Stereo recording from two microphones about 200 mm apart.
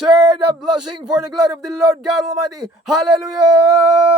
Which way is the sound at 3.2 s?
20° right (ahead or behind).